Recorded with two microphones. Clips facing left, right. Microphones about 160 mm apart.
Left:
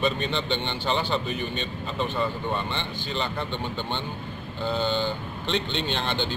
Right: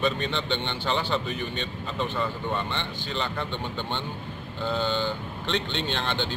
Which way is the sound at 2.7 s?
10° left (ahead or behind).